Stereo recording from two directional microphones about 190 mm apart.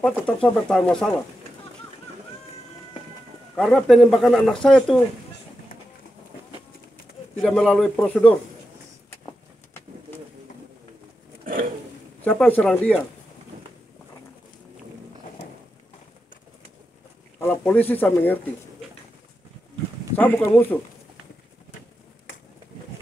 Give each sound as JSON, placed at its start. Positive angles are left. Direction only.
{"t": 0.0, "sound": "speech", "side_deg": 5}
{"t": 3.5, "sound": "speech", "side_deg": 0}
{"t": 7.4, "sound": "speech", "side_deg": 5}
{"t": 11.4, "sound": "a sound", "side_deg": -45}
{"t": 12.2, "sound": "speech", "side_deg": 10}
{"t": 17.4, "sound": "speech", "side_deg": 10}
{"t": 20.2, "sound": "speech", "side_deg": 10}